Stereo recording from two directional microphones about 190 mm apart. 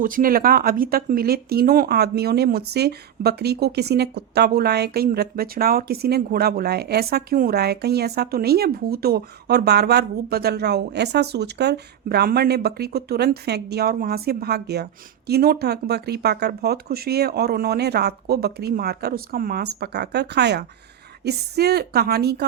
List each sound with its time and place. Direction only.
0.0 s speech: 45° right (ahead or behind)